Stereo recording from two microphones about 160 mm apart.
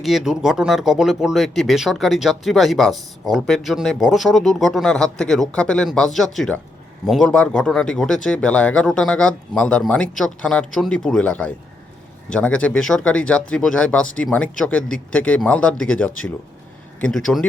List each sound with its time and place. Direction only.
0.0 s speech: centre (ahead or behind)